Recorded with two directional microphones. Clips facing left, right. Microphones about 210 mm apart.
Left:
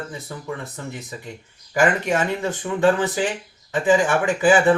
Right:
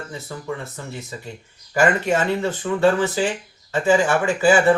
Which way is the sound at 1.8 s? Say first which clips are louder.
Right 1 dB; 15° left (ahead or behind).